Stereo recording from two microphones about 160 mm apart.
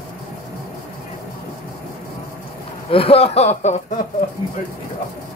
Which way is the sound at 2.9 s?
35° left (ahead or behind).